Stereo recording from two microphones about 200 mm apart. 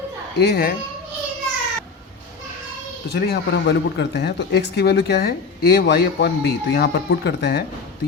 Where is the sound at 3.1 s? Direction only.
55° left (ahead or behind).